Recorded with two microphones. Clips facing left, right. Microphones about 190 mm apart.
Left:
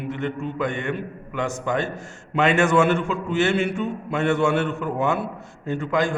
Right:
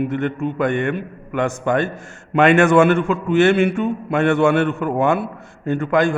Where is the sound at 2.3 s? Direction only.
60° right (ahead or behind).